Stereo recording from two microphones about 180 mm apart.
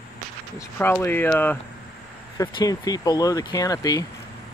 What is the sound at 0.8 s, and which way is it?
Speech, 10° left (ahead or behind).